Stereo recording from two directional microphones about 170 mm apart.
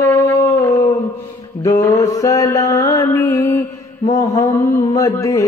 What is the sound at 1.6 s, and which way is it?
Mantra, 20° left (ahead or behind).